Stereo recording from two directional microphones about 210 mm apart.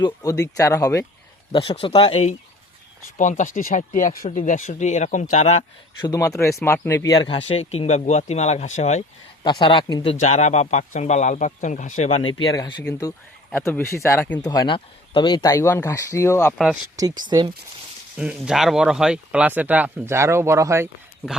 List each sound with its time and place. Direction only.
0.0 s a man's voice: 15° left (ahead or behind); by 6.1 s 30° left (ahead or behind)
6.1 s a man's voice: 15° left (ahead or behind); by 9.0 s 35° left (ahead or behind)
9.4 s speech: 20° left (ahead or behind)
12.3 s a man's voice: 20° left (ahead or behind)
17.0 s speech: 20° right (ahead or behind)
18.2 s speech: 5° right (ahead or behind)